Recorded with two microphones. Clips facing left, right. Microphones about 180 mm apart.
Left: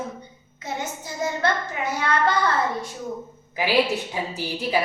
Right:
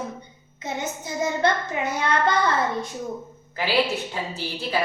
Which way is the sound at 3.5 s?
15° left (ahead or behind).